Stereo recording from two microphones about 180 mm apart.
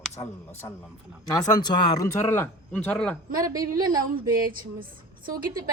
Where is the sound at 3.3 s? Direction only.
20° right (ahead or behind).